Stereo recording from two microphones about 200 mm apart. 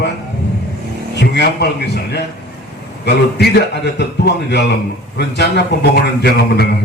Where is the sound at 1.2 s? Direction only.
55° left (ahead or behind).